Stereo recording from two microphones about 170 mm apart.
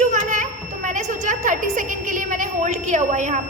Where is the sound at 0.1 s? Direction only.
50° right (ahead or behind).